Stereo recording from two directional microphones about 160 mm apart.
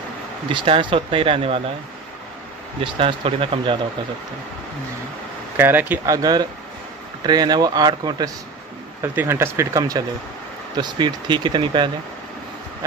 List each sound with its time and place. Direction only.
0.5 s speech: 30° right (ahead or behind)
2.8 s speech: 35° right (ahead or behind)
5.6 s speech: 10° right (ahead or behind)
9.0 s speech: 15° right (ahead or behind); by 11.9 s 30° right (ahead or behind)